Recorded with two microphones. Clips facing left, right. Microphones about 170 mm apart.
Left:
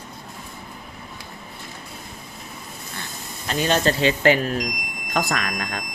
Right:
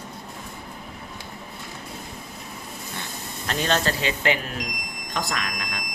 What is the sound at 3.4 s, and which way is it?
Speech, 5° left (ahead or behind).